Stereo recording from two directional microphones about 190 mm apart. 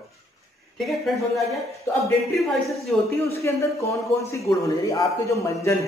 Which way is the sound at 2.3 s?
Centre (ahead or behind).